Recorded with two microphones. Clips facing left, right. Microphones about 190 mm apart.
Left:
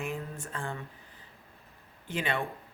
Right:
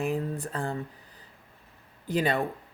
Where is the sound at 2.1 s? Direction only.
40° right (ahead or behind).